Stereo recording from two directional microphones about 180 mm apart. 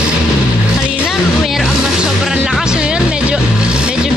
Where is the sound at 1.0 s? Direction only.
Centre (ahead or behind).